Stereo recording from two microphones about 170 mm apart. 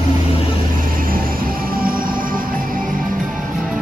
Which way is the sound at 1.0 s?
55° right (ahead or behind).